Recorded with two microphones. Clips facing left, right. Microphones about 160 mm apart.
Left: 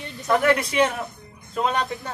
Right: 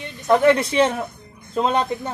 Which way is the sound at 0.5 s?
25° right (ahead or behind).